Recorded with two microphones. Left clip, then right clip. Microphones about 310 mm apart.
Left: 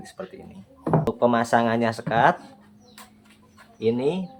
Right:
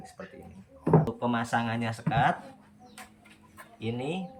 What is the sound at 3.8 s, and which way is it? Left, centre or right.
Speech, centre.